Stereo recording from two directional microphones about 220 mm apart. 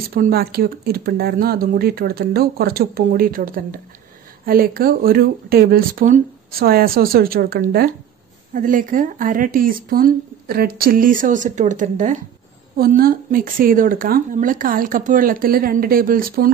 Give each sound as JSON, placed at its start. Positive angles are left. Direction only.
{"t": 0.1, "sound": "speech", "side_deg": -45}